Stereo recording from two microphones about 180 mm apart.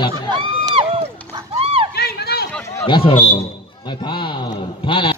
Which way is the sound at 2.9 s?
25° left (ahead or behind).